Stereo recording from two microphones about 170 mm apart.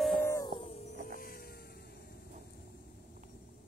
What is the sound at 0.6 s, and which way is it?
Music, 40° left (ahead or behind).